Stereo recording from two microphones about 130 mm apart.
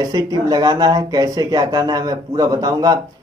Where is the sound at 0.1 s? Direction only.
30° right (ahead or behind).